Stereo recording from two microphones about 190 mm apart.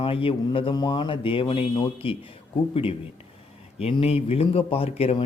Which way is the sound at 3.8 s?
30° left (ahead or behind).